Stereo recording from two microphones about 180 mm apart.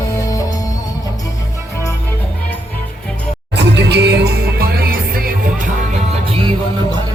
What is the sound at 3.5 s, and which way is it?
Music, 70° right (ahead or behind).